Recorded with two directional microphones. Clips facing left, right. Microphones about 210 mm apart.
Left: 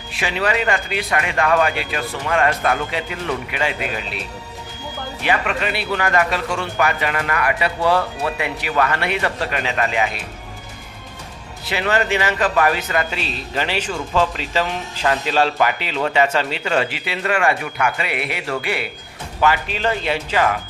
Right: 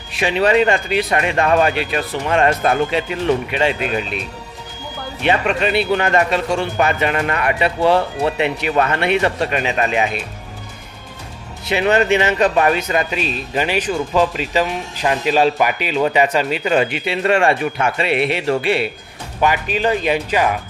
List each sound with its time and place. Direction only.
0.1 s speech: 20° right (ahead or behind)
5.2 s speech: 25° right (ahead or behind)
11.6 s speech: 20° right (ahead or behind)
19.4 s speech: 15° right (ahead or behind)